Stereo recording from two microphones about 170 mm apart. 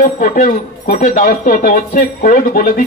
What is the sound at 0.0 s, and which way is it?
Speech, 50° left (ahead or behind).